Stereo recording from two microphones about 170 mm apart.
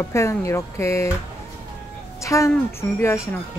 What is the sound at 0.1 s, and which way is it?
Speech, 15° left (ahead or behind).